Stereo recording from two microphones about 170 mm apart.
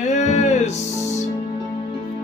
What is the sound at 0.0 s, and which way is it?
Music, 45° left (ahead or behind).